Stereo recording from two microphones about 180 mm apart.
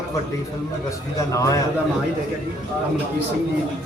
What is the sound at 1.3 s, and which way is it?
Speech, 20° left (ahead or behind).